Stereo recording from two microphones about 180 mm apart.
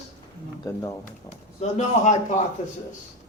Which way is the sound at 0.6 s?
15° left (ahead or behind).